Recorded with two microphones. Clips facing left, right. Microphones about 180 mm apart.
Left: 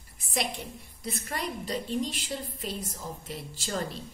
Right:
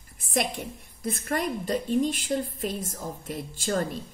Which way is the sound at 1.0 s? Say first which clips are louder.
Right 6 dB; 50° right (ahead or behind).